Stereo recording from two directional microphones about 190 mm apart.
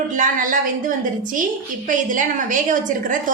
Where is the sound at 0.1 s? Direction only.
45° right (ahead or behind).